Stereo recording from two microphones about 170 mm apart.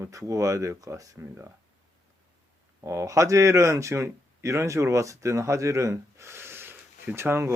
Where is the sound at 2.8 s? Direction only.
20° right (ahead or behind).